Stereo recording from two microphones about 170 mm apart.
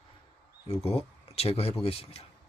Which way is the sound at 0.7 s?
35° left (ahead or behind).